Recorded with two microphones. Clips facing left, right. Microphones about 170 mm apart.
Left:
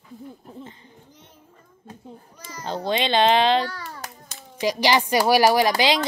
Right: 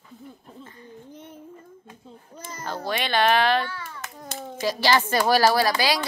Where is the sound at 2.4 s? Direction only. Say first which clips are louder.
Right 3 dB; 50° right (ahead or behind).